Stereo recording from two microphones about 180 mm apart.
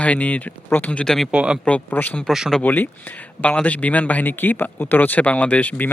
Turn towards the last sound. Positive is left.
turn(degrees=10)  # may be behind; listen again after turning